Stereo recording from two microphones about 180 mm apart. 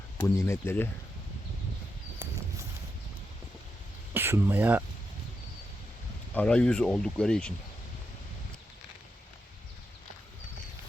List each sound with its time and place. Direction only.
0.2 s speech: 15° left (ahead or behind)
4.1 s speech: 10° right (ahead or behind)
6.3 s speech: 5° left (ahead or behind)